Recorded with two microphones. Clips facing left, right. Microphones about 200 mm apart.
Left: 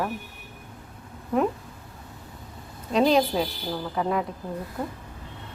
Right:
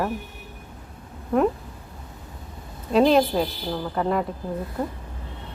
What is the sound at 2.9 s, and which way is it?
A man's voice, 5° right (ahead or behind).